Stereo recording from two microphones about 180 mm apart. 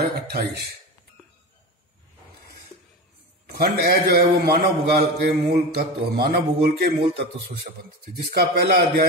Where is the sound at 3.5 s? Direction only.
60° right (ahead or behind).